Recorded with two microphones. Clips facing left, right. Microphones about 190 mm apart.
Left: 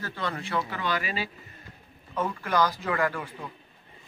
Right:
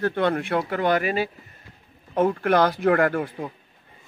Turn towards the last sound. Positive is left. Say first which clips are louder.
# right 7 dB
turn(degrees=-50)  # may be behind; listen again after turning